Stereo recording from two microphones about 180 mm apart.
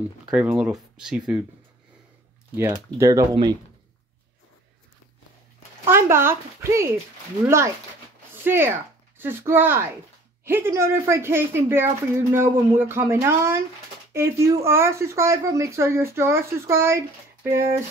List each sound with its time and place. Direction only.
0.3 s speech: 5° right (ahead or behind)
2.7 s speech: 20° right (ahead or behind)
5.9 s speech: 15° right (ahead or behind)